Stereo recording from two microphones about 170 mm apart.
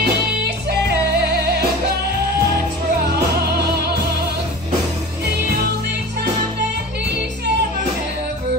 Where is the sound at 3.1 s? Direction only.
70° right (ahead or behind).